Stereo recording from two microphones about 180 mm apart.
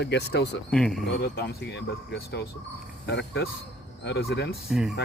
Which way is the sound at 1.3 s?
70° left (ahead or behind).